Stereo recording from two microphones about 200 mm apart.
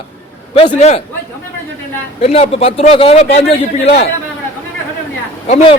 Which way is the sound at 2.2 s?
30° left (ahead or behind).